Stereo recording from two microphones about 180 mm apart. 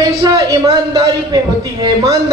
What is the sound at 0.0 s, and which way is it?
A man's voice, 20° right (ahead or behind).